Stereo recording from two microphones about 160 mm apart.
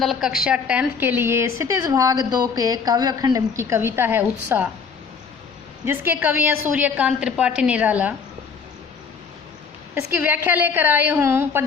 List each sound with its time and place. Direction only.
0.0 s a woman's voice: centre (ahead or behind)
5.8 s a woman's voice: 15° right (ahead or behind)
9.9 s a woman's voice: 15° right (ahead or behind)